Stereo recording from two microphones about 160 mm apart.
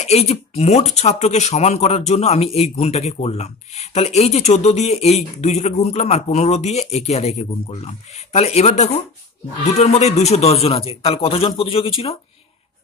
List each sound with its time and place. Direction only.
0.0 s a man's voice: 40° left (ahead or behind)